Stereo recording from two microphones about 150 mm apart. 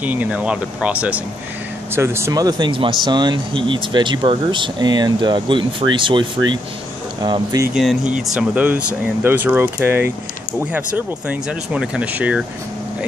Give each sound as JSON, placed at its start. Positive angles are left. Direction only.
{"t": 0.0, "sound": "speech", "side_deg": -10}
{"t": 8.4, "sound": "speech", "side_deg": -10}